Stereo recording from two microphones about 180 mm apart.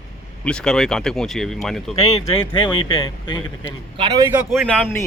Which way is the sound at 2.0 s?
35° left (ahead or behind).